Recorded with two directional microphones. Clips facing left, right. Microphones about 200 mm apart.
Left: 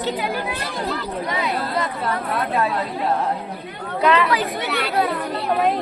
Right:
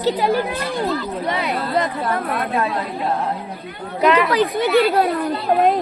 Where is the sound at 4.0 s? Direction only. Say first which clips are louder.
Right 2 dB; 15° right (ahead or behind).